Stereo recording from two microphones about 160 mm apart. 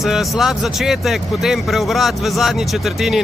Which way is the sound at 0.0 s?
Centre (ahead or behind).